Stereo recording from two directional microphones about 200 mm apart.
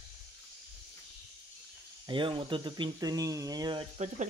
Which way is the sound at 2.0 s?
25° right (ahead or behind).